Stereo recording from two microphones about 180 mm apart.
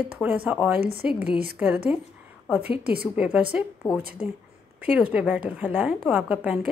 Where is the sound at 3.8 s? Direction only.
20° left (ahead or behind).